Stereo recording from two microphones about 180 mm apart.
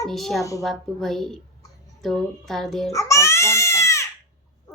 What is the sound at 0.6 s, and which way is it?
A child's voice, centre (ahead or behind).